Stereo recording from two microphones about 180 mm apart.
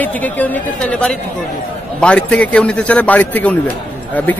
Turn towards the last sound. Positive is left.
turn(degrees=10)  # may be behind; listen again after turning